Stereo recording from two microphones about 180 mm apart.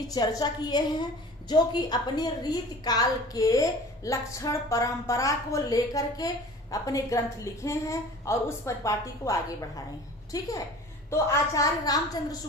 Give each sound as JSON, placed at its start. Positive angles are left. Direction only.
{"t": 0.1, "sound": "a woman's voice", "side_deg": 20}